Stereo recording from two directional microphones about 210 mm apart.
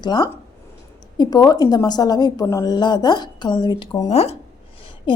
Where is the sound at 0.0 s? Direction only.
20° left (ahead or behind).